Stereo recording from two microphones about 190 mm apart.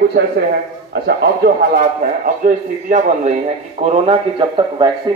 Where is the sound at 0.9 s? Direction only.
55° right (ahead or behind).